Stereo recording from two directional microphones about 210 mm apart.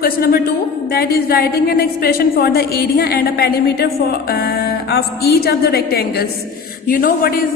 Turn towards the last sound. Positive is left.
turn(degrees=45)  # may be behind; listen again after turning